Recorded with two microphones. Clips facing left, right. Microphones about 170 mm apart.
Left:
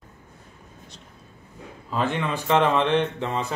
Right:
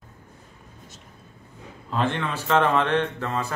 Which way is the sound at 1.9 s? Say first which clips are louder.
Even; 10° left (ahead or behind).